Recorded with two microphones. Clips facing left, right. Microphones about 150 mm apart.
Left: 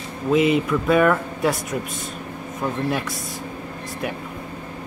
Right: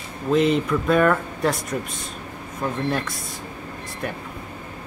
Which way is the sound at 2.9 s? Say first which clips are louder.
Left 1 dB; 5° left (ahead or behind).